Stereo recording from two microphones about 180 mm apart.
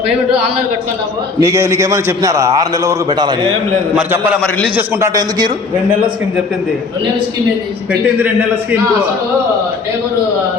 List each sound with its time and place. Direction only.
1.4 s a man's voice: 15° right (ahead or behind)
4.4 s a man's voice: centre (ahead or behind)
4.8 s speech: 15° right (ahead or behind)